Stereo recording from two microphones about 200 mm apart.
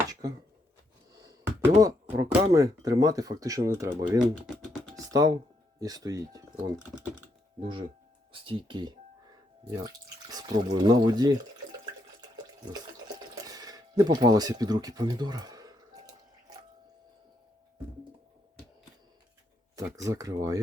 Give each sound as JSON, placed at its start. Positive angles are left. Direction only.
{"t": 0.1, "sound": "chopping", "side_deg": -20}
{"t": 1.1, "sound": "speech", "side_deg": -15}
{"t": 4.9, "sound": "computer keyboard", "side_deg": -20}
{"t": 5.8, "sound": "speech", "side_deg": -20}
{"t": 8.3, "sound": "speech", "side_deg": -25}
{"t": 13.1, "sound": "a sound", "side_deg": -20}
{"t": 19.7, "sound": "speech", "side_deg": -15}